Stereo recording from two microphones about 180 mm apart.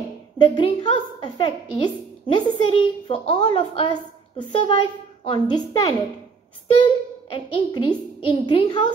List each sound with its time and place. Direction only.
0.6 s a woman's voice: 25° left (ahead or behind)